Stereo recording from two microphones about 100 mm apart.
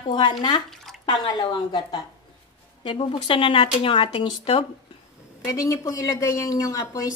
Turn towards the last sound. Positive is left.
turn(degrees=35)  # may be behind; listen again after turning